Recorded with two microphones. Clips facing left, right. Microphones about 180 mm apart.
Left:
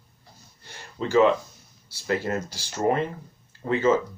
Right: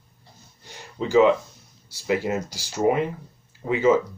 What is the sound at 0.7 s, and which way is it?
Speech, 15° right (ahead or behind).